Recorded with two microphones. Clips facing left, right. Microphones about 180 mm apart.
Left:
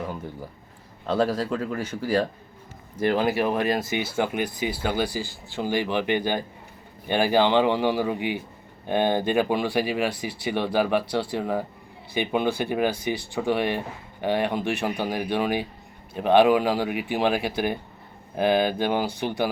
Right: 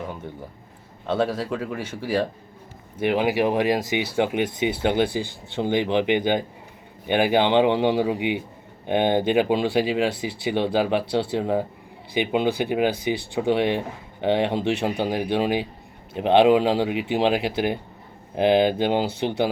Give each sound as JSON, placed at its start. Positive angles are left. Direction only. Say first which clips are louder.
{"t": 1.0, "sound": "speech", "louder": "even", "side_deg": 0}